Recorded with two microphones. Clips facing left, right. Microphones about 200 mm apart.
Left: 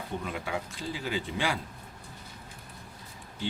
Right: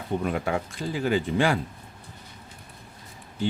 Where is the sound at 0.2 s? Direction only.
55° right (ahead or behind).